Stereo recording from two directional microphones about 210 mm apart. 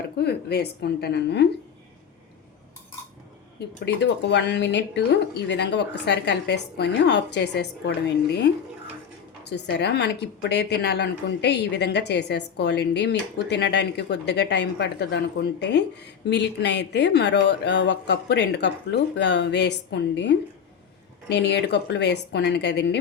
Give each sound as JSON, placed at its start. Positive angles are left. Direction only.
{"t": 0.2, "sound": "a woman's voice", "side_deg": 50}
{"t": 3.8, "sound": "a woman's voice", "side_deg": 55}
{"t": 9.5, "sound": "a woman's voice", "side_deg": 55}